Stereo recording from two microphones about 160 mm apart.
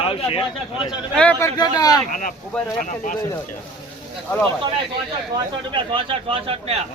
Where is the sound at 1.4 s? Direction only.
25° left (ahead or behind).